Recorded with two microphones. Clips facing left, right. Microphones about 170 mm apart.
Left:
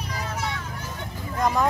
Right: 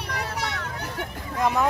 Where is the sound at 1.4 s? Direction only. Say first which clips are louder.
Even; 5° right (ahead or behind).